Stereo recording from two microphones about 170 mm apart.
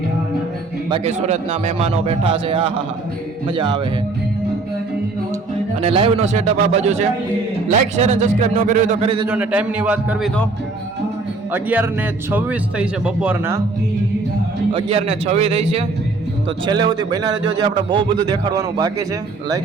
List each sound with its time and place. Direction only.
0.9 s a man's voice: 35° right (ahead or behind)
5.8 s a man's voice: 35° right (ahead or behind)
9.2 s speech: 10° right (ahead or behind)
11.5 s speech: 10° right (ahead or behind)
14.7 s a man's voice: 35° right (ahead or behind)
16.6 s a man's voice: 25° right (ahead or behind)